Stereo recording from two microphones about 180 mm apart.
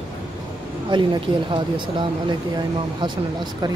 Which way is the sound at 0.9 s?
25° right (ahead or behind).